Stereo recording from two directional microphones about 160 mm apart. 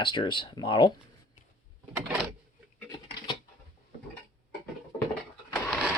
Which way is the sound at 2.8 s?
25° left (ahead or behind).